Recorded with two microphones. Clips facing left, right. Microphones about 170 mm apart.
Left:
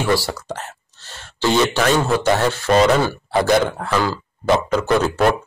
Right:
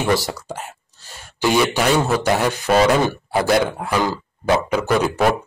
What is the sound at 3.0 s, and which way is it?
A man's voice, 20° right (ahead or behind).